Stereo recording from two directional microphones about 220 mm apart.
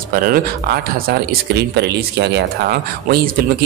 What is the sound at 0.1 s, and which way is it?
Speech, 40° right (ahead or behind).